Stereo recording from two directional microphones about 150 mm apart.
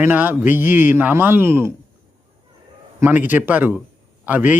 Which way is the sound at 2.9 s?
15° right (ahead or behind).